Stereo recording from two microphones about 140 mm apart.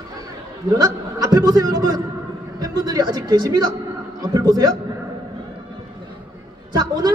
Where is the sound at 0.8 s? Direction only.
25° right (ahead or behind).